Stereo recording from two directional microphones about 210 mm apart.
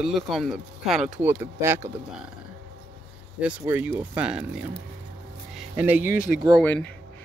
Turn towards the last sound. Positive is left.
turn(degrees=5)  # may be behind; listen again after turning